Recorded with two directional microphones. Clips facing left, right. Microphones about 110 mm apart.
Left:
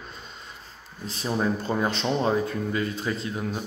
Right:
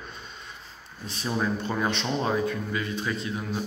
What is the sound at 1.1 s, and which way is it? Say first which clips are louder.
Speech: left 2 dB; 30° left (ahead or behind).